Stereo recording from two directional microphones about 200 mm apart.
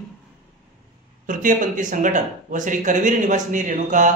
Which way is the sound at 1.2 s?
40° right (ahead or behind).